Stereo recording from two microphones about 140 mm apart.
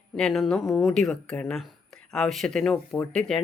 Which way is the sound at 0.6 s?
20° left (ahead or behind).